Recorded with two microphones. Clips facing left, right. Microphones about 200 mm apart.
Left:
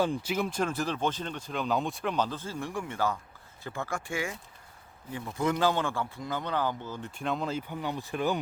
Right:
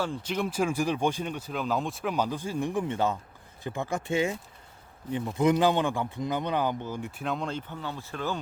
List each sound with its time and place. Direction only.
0.0 s speech: 10° left (ahead or behind); by 7.1 s 15° right (ahead or behind)
7.2 s speech: centre (ahead or behind)